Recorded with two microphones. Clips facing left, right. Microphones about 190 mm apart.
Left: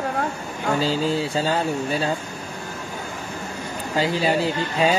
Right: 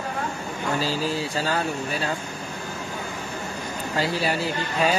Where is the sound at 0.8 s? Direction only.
25° left (ahead or behind).